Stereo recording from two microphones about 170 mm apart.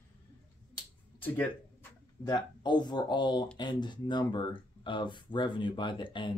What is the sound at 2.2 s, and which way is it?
Speech, 25° left (ahead or behind).